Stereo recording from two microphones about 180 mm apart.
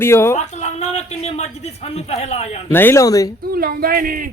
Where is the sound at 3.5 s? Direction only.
55° right (ahead or behind).